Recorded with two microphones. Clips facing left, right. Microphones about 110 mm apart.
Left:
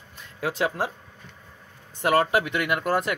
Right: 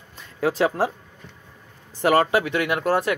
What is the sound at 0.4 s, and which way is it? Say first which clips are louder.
Speech: right 5 dB; 40° right (ahead or behind).